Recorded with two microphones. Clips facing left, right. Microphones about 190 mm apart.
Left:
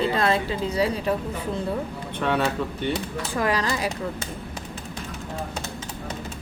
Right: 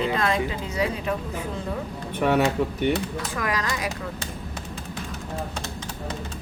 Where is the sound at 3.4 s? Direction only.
30° left (ahead or behind).